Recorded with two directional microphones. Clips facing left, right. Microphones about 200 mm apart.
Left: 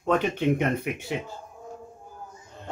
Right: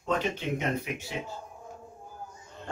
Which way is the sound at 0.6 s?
55° left (ahead or behind).